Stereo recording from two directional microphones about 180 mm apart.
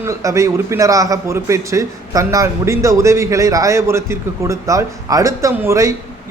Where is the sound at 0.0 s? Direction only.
15° right (ahead or behind).